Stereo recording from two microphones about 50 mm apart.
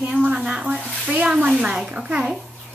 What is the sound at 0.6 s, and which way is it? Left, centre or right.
Speech, right.